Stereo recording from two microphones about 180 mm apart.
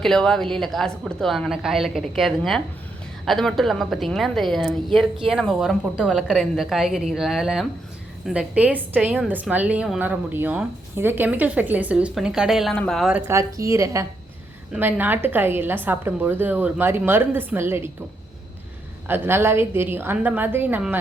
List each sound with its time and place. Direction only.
0.0 s a woman's voice: 5° left (ahead or behind); by 17.9 s 15° right (ahead or behind)
19.0 s a woman's voice: 10° right (ahead or behind)